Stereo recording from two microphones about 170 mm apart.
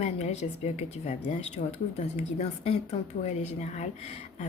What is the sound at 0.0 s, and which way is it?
Speech, 40° left (ahead or behind).